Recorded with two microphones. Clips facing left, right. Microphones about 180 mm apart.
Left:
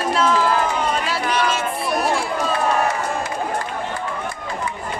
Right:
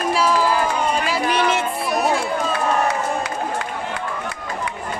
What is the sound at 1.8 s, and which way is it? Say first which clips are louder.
Run: even; centre (ahead or behind).